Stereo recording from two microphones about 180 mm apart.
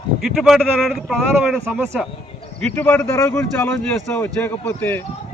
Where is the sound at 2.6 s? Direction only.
10° left (ahead or behind).